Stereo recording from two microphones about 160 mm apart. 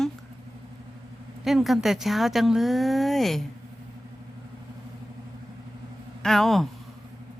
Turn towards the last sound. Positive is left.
turn(degrees=0)  # may be behind; listen again after turning